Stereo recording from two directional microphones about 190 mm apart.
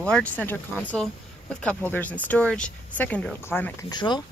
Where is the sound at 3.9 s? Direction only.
25° left (ahead or behind).